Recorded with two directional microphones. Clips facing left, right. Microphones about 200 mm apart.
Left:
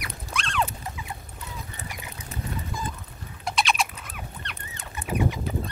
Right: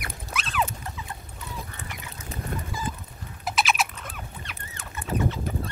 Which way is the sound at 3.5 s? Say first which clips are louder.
Even; 5° right (ahead or behind).